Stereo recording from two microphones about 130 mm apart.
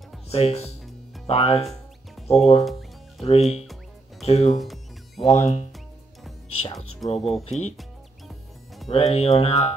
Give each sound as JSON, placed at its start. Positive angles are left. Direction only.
{"t": 0.3, "sound": "speech", "side_deg": 50}
{"t": 4.6, "sound": "music", "side_deg": 0}
{"t": 5.2, "sound": "speech", "side_deg": 60}
{"t": 7.2, "sound": "speech", "side_deg": 0}
{"t": 7.4, "sound": "speech", "side_deg": 60}
{"t": 8.8, "sound": "speech", "side_deg": 55}